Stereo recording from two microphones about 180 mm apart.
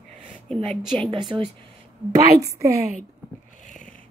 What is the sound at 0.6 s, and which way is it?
Speech, 5° left (ahead or behind).